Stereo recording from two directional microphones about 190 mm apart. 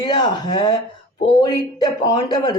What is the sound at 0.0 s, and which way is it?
Speech, 25° left (ahead or behind).